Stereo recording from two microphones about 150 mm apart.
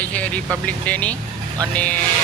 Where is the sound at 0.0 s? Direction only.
10° left (ahead or behind).